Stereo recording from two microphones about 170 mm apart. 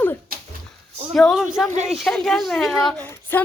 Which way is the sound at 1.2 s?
Centre (ahead or behind).